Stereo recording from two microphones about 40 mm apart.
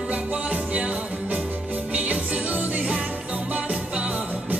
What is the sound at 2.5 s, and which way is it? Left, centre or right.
Music, right.